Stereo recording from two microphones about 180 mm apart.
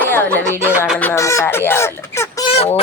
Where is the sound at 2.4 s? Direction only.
35° left (ahead or behind).